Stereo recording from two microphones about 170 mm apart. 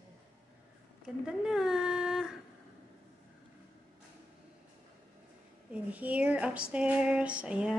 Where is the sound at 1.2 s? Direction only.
5° right (ahead or behind).